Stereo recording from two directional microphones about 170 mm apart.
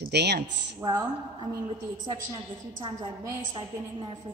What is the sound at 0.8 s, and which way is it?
A woman's voice, 20° right (ahead or behind).